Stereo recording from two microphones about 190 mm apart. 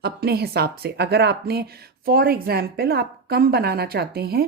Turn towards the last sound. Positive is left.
turn(degrees=-55)  # may be behind; listen again after turning